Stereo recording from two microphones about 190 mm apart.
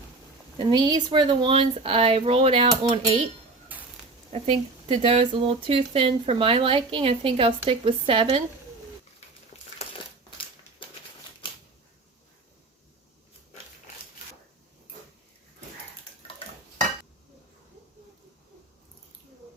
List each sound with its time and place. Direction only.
0.5 s speech: 25° right (ahead or behind)
3.7 s a sound: 10° right (ahead or behind)
4.3 s speech: 35° right (ahead or behind)
9.5 s crumpling: 35° left (ahead or behind)